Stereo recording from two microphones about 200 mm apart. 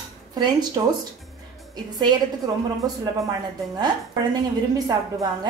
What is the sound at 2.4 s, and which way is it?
Speech, 20° right (ahead or behind).